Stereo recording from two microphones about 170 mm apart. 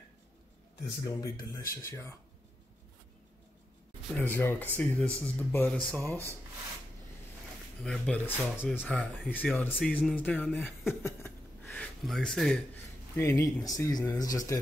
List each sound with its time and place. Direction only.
1.3 s speech: 20° left (ahead or behind)
4.1 s speech: 10° left (ahead or behind)
7.8 s speech: 5° left (ahead or behind)
8.8 s speech: centre (ahead or behind)
11.0 s a sound: 10° left (ahead or behind)
13.1 s speech: 15° left (ahead or behind)